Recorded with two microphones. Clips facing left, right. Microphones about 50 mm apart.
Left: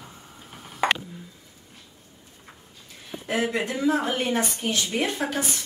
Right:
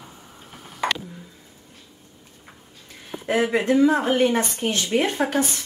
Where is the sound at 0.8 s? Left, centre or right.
Centre.